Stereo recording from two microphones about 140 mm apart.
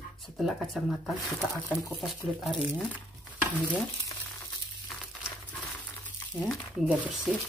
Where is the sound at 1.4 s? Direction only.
20° left (ahead or behind).